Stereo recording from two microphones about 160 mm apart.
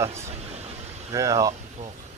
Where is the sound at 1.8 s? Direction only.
45° right (ahead or behind).